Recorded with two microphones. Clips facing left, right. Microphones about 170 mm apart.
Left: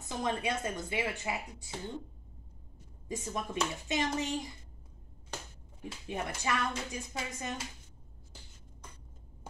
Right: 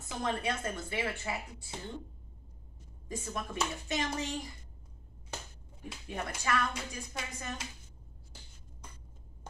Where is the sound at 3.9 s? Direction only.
20° left (ahead or behind).